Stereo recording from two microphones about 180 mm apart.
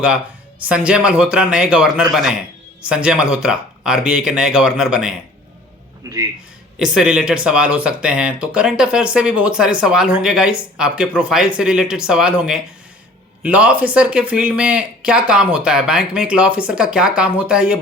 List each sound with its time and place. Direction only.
0.7 s speech: 5° right (ahead or behind)
6.0 s speech: 20° right (ahead or behind)
6.7 s speech: 5° right (ahead or behind)